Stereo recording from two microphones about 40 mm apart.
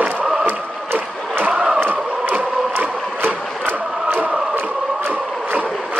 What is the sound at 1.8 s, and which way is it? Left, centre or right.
Chant, right.